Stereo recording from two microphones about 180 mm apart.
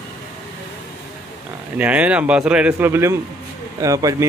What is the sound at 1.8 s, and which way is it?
Speech, 10° right (ahead or behind).